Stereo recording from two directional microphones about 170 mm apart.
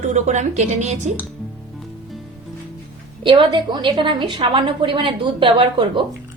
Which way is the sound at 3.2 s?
30° right (ahead or behind).